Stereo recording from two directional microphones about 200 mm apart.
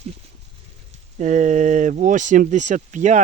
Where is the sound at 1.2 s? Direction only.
40° right (ahead or behind).